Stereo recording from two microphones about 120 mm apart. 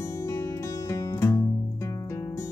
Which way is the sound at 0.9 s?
25° left (ahead or behind).